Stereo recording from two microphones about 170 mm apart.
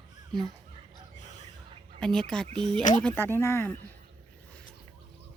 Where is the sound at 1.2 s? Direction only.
45° left (ahead or behind).